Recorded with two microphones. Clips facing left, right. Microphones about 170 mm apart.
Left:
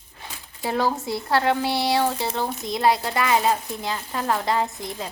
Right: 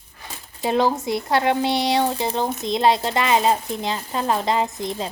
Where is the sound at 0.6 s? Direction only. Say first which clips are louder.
Right 4 dB; 20° right (ahead or behind).